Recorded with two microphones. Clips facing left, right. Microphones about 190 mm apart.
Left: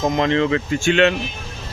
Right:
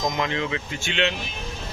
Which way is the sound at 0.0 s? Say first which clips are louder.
Left 8 dB; 35° left (ahead or behind).